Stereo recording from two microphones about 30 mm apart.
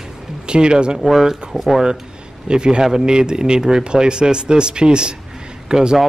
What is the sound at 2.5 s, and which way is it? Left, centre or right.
Speech, right.